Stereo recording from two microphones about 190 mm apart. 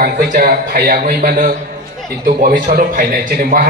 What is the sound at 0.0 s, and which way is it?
A man's voice, 50° right (ahead or behind).